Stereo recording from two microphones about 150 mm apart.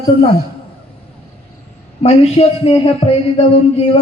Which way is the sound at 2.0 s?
40° left (ahead or behind).